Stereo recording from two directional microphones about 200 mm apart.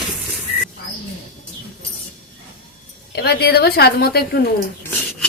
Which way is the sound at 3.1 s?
55° left (ahead or behind).